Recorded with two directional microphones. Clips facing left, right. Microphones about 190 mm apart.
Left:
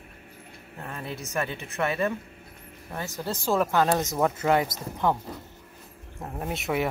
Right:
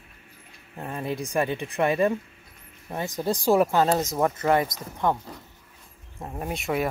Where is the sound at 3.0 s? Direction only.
15° right (ahead or behind).